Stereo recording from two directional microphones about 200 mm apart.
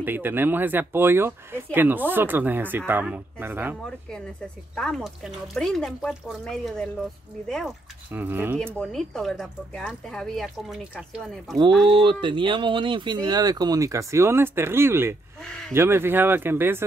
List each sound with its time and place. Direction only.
0.0 s speech: 10° right (ahead or behind)
4.7 s speech: centre (ahead or behind)
8.1 s speech: 10° right (ahead or behind)
8.7 s speech: centre (ahead or behind)
11.9 s speech: 25° right (ahead or behind); by 16.8 s 10° right (ahead or behind)